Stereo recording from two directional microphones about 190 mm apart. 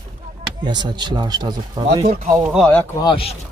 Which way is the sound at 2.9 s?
25° left (ahead or behind).